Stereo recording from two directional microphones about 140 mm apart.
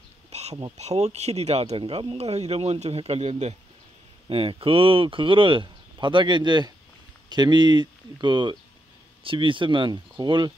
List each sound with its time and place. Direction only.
0.3 s insect: 50° right (ahead or behind)
0.7 s speech: 50° right (ahead or behind)
4.3 s speech: 40° right (ahead or behind)